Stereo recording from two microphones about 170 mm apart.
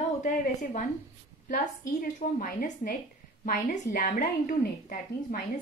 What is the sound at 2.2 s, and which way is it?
A woman's voice, 55° left (ahead or behind).